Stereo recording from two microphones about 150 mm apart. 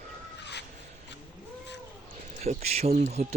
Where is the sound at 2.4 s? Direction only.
45° right (ahead or behind).